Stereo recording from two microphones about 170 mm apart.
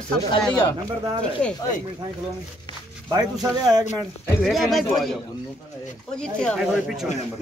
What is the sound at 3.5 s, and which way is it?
Speech, 25° right (ahead or behind).